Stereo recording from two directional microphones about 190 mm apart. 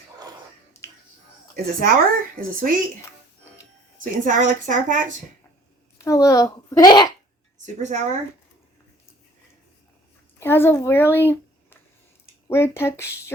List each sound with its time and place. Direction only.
0.8 s finger snapping: 15° left (ahead or behind)
1.5 s a woman's voice: 50° right (ahead or behind)
4.2 s a woman's voice: 40° right (ahead or behind)
6.1 s a child's voice: 15° left (ahead or behind)
7.6 s a woman's voice: 40° right (ahead or behind)
10.4 s a child's voice: 10° left (ahead or behind)